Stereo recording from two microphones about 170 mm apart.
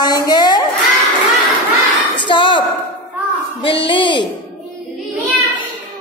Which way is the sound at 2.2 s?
30° left (ahead or behind).